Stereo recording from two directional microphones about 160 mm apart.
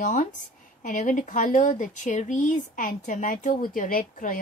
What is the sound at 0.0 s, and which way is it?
A woman's voice, 50° left (ahead or behind).